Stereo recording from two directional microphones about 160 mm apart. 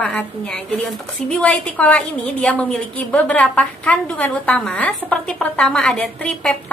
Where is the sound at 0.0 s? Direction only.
5° left (ahead or behind).